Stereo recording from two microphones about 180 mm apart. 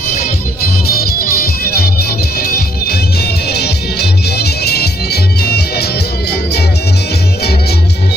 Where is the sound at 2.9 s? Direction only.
65° left (ahead or behind).